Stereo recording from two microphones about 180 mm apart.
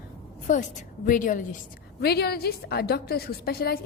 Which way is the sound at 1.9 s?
60° left (ahead or behind).